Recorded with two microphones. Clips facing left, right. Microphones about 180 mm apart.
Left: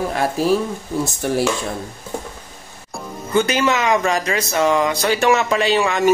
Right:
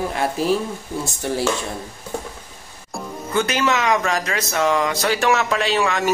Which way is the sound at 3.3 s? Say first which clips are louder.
Left 3 dB; centre (ahead or behind).